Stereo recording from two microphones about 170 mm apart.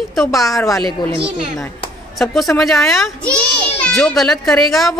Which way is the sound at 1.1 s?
30° right (ahead or behind).